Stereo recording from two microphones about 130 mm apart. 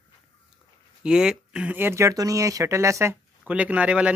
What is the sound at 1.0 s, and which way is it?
Speech, 5° right (ahead or behind).